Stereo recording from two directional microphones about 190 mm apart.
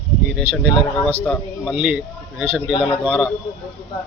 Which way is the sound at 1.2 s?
5° left (ahead or behind).